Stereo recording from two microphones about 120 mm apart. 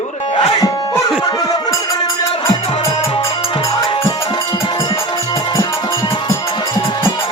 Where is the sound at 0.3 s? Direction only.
40° left (ahead or behind).